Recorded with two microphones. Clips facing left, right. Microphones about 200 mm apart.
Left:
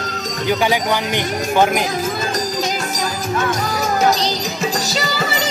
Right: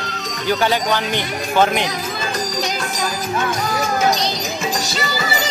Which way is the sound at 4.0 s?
40° left (ahead or behind).